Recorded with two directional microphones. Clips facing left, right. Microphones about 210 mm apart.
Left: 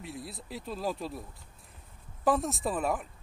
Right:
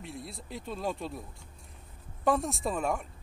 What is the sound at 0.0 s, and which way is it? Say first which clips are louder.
Speech: left 1 dB; centre (ahead or behind).